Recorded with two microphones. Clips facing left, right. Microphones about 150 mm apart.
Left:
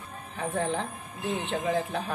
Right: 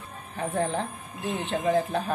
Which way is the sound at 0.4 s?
35° right (ahead or behind).